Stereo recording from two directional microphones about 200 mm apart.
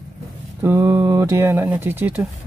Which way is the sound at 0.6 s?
10° right (ahead or behind).